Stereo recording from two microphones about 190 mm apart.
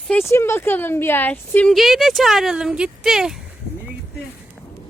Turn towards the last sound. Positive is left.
turn(degrees=0)  # may be behind; listen again after turning